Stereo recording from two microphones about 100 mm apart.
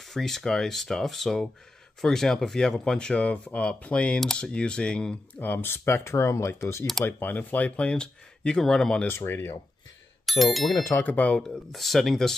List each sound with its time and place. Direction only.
0.1 s speech: 5° left (ahead or behind)
9.0 s speech: 20° left (ahead or behind)
10.2 s speech: centre (ahead or behind)
10.7 s speech: 30° left (ahead or behind)
11.0 s speech: 15° left (ahead or behind)